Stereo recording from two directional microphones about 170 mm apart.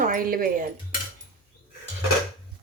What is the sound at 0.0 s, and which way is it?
Speech, 55° right (ahead or behind).